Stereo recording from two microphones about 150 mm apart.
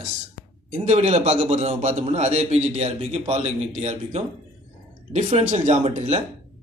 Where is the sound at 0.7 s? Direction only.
45° right (ahead or behind).